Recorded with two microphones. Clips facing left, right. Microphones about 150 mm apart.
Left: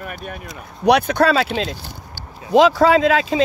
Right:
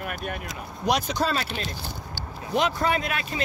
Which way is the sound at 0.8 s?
65° left (ahead or behind).